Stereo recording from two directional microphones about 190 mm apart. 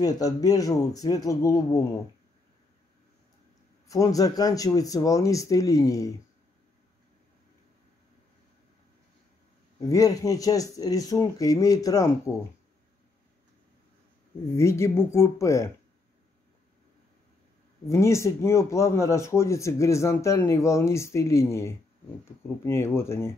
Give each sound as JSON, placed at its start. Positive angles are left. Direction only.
{"t": 0.0, "sound": "speech", "side_deg": 20}
{"t": 3.8, "sound": "speech", "side_deg": 20}
{"t": 9.8, "sound": "speech", "side_deg": 20}
{"t": 14.5, "sound": "speech", "side_deg": 15}
{"t": 17.8, "sound": "speech", "side_deg": 15}